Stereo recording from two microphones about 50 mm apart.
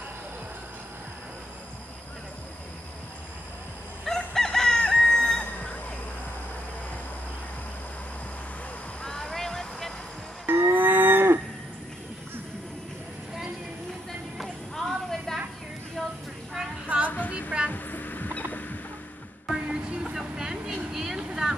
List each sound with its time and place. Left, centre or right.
4.0 s chicken: centre
5.4 s a sound: left
9.0 s vehicle: centre
10.4 s livestock: right
14.4 s clip-clop: centre
16.0 s a sound: centre
17.3 s a sound: right
17.6 s vehicle: left
19.4 s vehicle: centre